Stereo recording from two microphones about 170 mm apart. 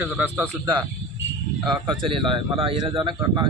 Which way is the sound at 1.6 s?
25° right (ahead or behind).